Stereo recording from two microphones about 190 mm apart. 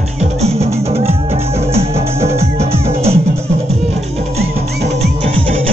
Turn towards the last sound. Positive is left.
turn(degrees=-30)  # may be behind; listen again after turning